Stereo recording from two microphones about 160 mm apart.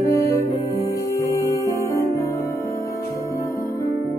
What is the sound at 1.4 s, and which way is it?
Music, 20° right (ahead or behind).